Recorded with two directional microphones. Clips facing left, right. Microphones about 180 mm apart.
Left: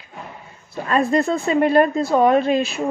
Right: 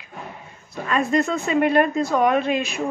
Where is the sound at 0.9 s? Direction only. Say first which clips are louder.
Left 3 dB; 35° left (ahead or behind).